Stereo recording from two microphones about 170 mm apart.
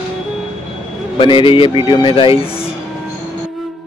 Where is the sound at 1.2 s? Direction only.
30° left (ahead or behind).